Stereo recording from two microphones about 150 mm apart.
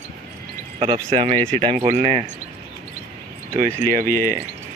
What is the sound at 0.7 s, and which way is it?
Speech, 35° right (ahead or behind).